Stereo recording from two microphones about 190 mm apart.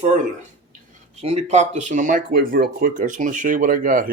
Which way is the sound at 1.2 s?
35° right (ahead or behind).